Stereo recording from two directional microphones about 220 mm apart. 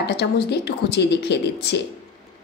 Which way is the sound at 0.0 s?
50° left (ahead or behind).